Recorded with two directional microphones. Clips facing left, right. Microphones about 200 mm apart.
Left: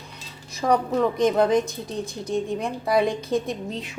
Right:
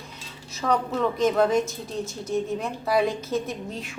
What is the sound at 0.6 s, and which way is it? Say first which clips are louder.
A woman's voice: left 3 dB; 15° left (ahead or behind).